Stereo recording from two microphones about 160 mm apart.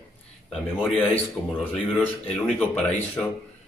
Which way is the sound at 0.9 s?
10° left (ahead or behind).